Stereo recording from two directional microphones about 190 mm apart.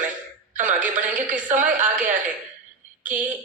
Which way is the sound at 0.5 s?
40° right (ahead or behind).